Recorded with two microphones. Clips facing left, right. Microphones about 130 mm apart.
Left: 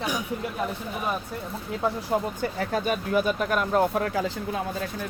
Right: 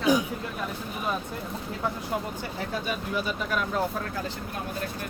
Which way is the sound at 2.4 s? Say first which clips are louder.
Left 5 dB; 50° left (ahead or behind).